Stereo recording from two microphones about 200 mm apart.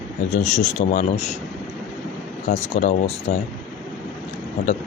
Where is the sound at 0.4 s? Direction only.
35° left (ahead or behind).